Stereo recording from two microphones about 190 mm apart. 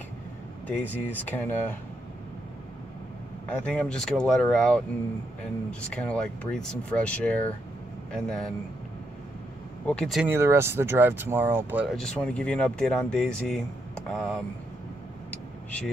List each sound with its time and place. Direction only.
0.7 s speech: 10° left (ahead or behind)
3.4 s speech: 5° left (ahead or behind)
9.8 s speech: 5° left (ahead or behind)
10.3 s speech: 15° right (ahead or behind); by 14.4 s 5° left (ahead or behind)